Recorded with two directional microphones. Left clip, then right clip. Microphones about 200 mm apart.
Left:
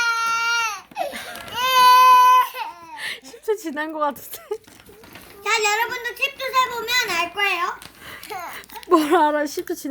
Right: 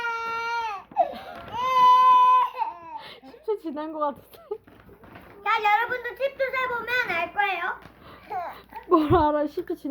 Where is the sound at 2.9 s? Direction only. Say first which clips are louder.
Left 9 dB; 20° left (ahead or behind).